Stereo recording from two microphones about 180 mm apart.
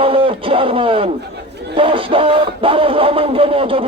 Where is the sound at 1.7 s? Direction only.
30° right (ahead or behind).